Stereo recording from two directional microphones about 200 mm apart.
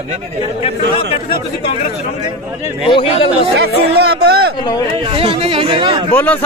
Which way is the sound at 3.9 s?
55° right (ahead or behind).